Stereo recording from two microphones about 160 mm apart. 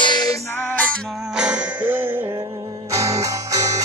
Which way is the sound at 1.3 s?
5° right (ahead or behind).